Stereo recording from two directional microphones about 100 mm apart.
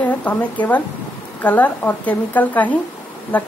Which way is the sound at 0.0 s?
15° left (ahead or behind).